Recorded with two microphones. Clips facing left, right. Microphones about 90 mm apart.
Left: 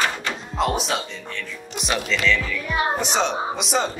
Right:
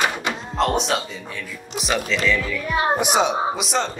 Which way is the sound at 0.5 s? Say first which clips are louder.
Right 2 dB; 5° left (ahead or behind).